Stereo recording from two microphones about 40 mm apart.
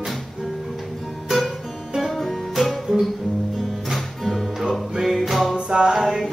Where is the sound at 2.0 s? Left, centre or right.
Centre.